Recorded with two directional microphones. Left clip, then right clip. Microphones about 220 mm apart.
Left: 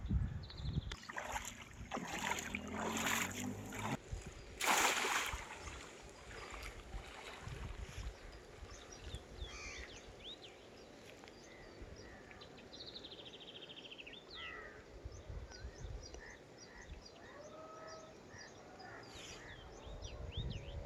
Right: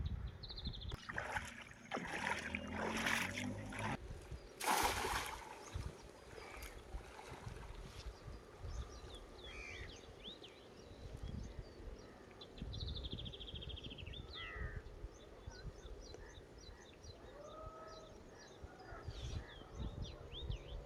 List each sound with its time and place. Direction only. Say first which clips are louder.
1.0 s boat: right 1 dB; 5° left (ahead or behind)
4.5 s splash: left 3 dB; centre (ahead or behind)
9.5 s a sound: left 1 dB; 50° right (ahead or behind)